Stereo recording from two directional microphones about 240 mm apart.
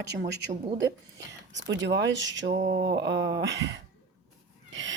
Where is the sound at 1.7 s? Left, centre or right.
Right.